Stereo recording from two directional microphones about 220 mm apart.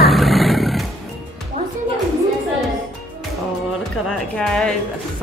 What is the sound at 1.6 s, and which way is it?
Music, 30° right (ahead or behind).